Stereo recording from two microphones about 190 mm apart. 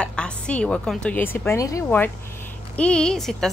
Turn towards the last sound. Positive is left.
turn(degrees=0)  # may be behind; listen again after turning